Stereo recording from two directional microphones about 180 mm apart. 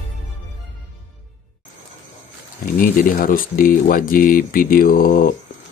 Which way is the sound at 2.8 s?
50° left (ahead or behind).